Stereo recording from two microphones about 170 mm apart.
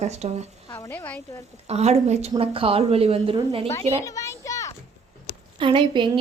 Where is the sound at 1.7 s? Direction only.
40° right (ahead or behind).